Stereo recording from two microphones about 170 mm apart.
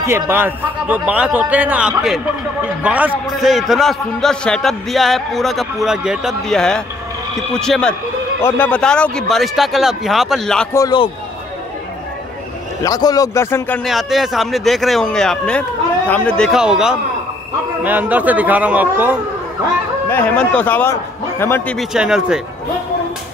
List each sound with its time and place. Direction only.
0.0 s a man's voice: 15° right (ahead or behind); by 10.7 s 5° left (ahead or behind)
10.7 s a man's voice: 25° left (ahead or behind)
12.8 s a man's voice: 20° left (ahead or behind)
13.8 s a man's voice: centre (ahead or behind)
20.1 s a man's voice: 10° left (ahead or behind)
21.7 s a man's voice: 5° right (ahead or behind)